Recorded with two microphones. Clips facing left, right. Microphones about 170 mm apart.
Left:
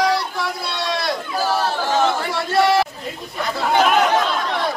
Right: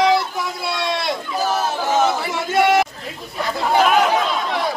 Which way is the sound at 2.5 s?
20° right (ahead or behind).